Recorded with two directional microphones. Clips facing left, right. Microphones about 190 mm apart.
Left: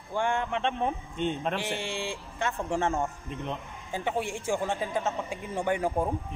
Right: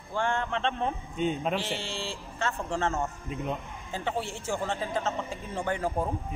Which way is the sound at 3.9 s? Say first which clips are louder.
Left 2 dB; 15° left (ahead or behind).